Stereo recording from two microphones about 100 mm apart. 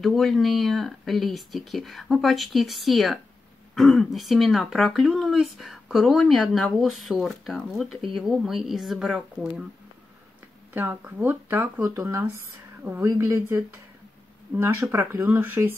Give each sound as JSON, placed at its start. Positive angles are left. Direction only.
{"t": 0.0, "sound": "speech", "side_deg": 0}
{"t": 10.7, "sound": "speech", "side_deg": -20}
{"t": 11.8, "sound": "speech", "side_deg": -35}